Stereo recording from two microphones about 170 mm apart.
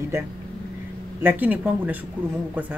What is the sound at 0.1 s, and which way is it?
Speech, 15° right (ahead or behind).